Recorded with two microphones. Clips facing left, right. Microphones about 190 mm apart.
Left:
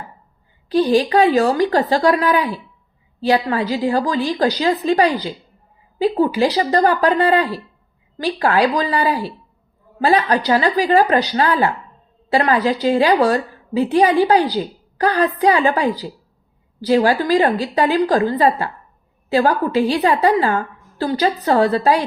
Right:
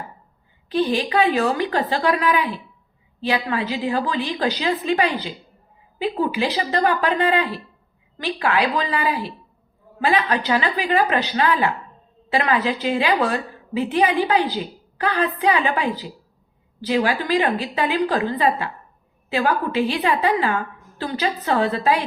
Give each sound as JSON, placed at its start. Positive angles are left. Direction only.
{"t": 0.7, "sound": "a woman's voice", "side_deg": 40}